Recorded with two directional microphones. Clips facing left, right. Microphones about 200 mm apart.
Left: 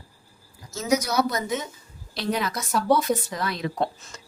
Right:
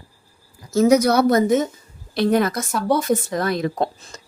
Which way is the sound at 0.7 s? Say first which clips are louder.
Right 9 dB; 60° right (ahead or behind).